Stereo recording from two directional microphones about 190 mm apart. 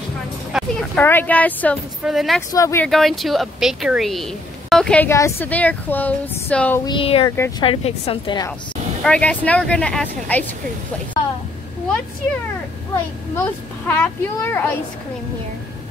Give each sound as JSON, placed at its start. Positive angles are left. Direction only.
{"t": 0.5, "sound": "a sound", "side_deg": -5}
{"t": 0.9, "sound": "speech", "side_deg": 10}
{"t": 2.5, "sound": "speech", "side_deg": 15}
{"t": 2.9, "sound": "speech", "side_deg": 0}
{"t": 6.9, "sound": "a woman's voice", "side_deg": 30}
{"t": 7.2, "sound": "speech", "side_deg": 15}
{"t": 7.6, "sound": "a woman's voice", "side_deg": 30}
{"t": 9.0, "sound": "speech", "side_deg": 5}
{"t": 13.4, "sound": "speech", "side_deg": 10}